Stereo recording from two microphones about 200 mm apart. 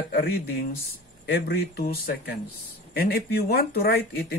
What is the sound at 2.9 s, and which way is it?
Speech, 50° left (ahead or behind).